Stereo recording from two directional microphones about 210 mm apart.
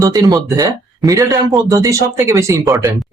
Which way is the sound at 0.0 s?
15° right (ahead or behind).